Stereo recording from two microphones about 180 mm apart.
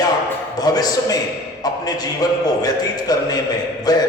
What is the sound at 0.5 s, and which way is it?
A man's voice, 20° left (ahead or behind).